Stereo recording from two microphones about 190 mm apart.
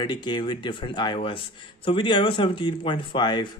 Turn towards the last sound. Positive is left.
turn(degrees=25)  # may be behind; listen again after turning